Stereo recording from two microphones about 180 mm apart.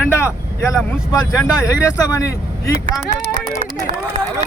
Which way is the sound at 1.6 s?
20° left (ahead or behind).